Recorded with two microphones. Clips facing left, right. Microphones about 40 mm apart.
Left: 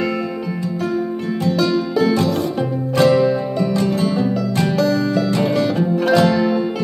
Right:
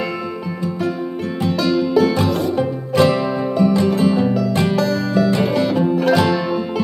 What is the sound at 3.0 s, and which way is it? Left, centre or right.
Music, centre.